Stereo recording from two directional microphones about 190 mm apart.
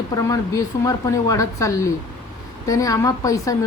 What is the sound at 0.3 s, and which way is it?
Speech, 15° left (ahead or behind).